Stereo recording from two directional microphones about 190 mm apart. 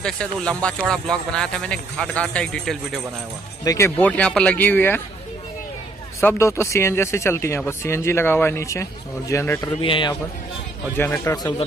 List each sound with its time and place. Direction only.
0.0 s speech: 5° left (ahead or behind)
3.6 s speech: 15° left (ahead or behind)
6.2 s speech: 15° left (ahead or behind)
9.8 s a man's voice: 25° left (ahead or behind)
11.0 s speech: 15° left (ahead or behind)